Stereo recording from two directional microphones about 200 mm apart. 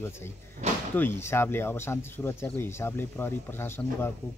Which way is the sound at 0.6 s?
35° right (ahead or behind).